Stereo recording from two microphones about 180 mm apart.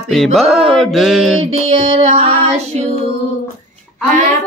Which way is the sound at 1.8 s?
35° right (ahead or behind).